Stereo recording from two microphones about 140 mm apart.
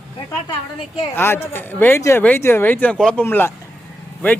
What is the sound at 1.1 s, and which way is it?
Speech, 15° left (ahead or behind).